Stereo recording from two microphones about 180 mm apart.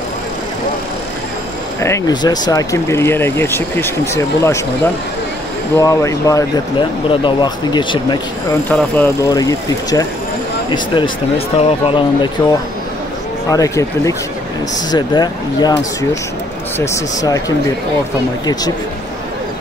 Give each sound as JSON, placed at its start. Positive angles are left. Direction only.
{"t": 1.8, "sound": "speech", "side_deg": 20}
{"t": 5.8, "sound": "speech", "side_deg": 20}
{"t": 8.6, "sound": "speech", "side_deg": 10}
{"t": 10.7, "sound": "speech", "side_deg": 30}
{"t": 13.5, "sound": "speech", "side_deg": 20}
{"t": 18.4, "sound": "speech", "side_deg": 20}